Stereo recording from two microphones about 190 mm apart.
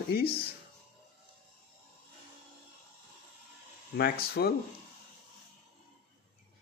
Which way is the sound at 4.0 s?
55° left (ahead or behind).